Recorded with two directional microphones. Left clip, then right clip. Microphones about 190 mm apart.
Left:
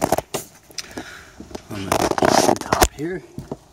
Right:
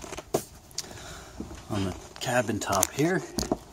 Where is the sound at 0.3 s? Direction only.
10° right (ahead or behind).